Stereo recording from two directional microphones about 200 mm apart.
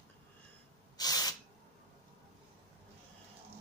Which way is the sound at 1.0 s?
20° left (ahead or behind).